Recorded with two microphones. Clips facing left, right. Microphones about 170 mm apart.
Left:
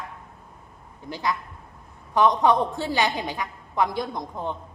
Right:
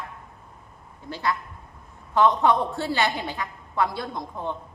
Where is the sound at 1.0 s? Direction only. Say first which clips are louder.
Even; 15° left (ahead or behind).